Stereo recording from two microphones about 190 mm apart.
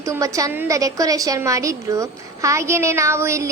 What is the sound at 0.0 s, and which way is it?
Child singing, 15° right (ahead or behind).